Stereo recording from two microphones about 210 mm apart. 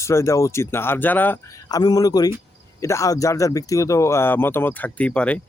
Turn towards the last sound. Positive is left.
turn(degrees=5)  # may be behind; listen again after turning